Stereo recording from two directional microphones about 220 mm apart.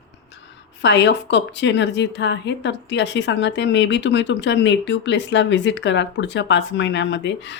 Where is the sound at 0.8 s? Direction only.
55° left (ahead or behind).